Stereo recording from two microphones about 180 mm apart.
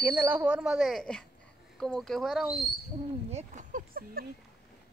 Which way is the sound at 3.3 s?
40° right (ahead or behind).